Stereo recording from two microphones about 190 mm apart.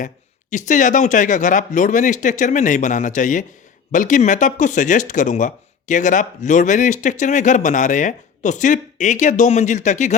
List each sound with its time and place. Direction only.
0.5 s speech: 40° left (ahead or behind)